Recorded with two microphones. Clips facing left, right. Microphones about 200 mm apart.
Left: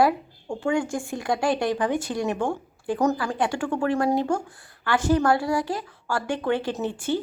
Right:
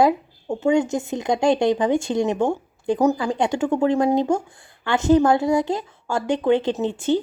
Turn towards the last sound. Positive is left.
turn(degrees=-20)  # may be behind; listen again after turning